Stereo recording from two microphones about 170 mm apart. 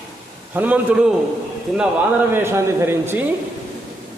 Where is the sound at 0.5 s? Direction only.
10° right (ahead or behind).